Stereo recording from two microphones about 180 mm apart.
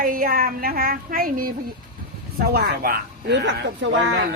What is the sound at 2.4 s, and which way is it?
Speech, 60° right (ahead or behind).